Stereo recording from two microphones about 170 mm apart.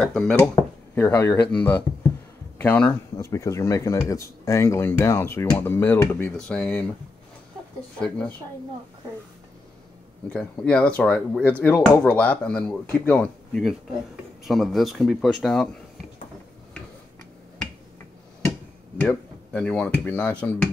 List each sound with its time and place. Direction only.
0.0 s speech: 5° left (ahead or behind)
8.0 s speech: 5° left (ahead or behind)
10.3 s speech: 5° left (ahead or behind)
18.9 s speech: 5° left (ahead or behind)